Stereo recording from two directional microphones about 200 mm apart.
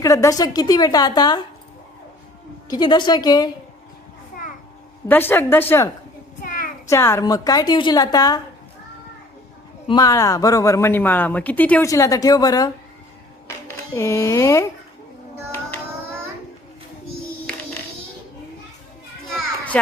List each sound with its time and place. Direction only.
0.0 s a woman's voice: 15° left (ahead or behind)
2.6 s a woman's voice: 20° left (ahead or behind)
5.0 s a woman's voice: 10° left (ahead or behind)
9.8 s speech: 20° left (ahead or behind)
17.5 s a sound: 5° left (ahead or behind)
19.7 s speech: 5° left (ahead or behind)